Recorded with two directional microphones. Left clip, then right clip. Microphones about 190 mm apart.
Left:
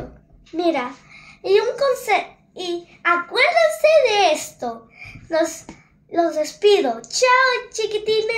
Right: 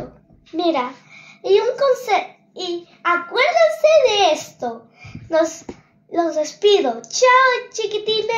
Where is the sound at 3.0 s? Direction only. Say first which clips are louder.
Even; 35° right (ahead or behind).